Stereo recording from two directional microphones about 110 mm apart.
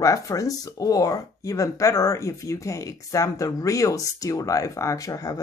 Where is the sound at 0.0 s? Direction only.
30° left (ahead or behind).